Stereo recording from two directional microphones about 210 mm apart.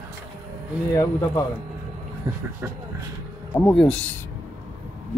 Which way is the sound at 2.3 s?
20° right (ahead or behind).